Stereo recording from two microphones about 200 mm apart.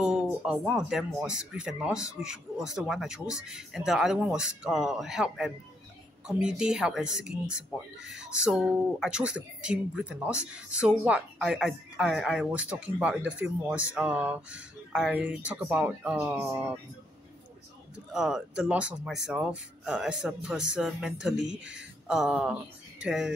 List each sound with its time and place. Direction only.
0.0 s speech: 5° right (ahead or behind)
18.1 s speech: 5° right (ahead or behind)